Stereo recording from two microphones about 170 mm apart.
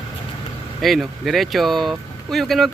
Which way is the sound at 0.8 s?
Centre (ahead or behind).